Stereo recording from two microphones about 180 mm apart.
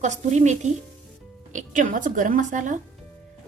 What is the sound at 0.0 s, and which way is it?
A woman's voice, 40° right (ahead or behind).